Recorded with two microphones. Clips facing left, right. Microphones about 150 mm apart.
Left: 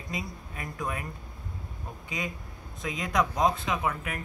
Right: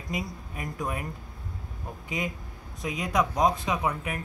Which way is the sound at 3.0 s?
10° right (ahead or behind).